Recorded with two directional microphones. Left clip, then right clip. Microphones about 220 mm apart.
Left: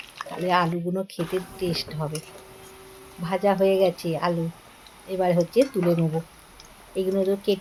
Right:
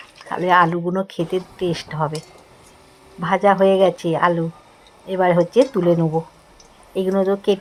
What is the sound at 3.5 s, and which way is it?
Jingle bell, 15° right (ahead or behind).